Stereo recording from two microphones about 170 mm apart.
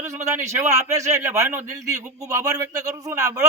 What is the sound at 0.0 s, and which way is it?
A man's voice, 15° right (ahead or behind).